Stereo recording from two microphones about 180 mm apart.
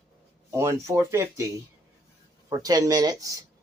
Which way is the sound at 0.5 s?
15° right (ahead or behind).